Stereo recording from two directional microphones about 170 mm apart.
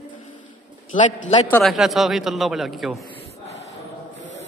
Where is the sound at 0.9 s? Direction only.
45° left (ahead or behind).